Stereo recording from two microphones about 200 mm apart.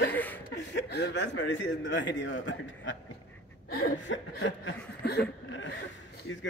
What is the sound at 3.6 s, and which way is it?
Chuckle, 55° left (ahead or behind).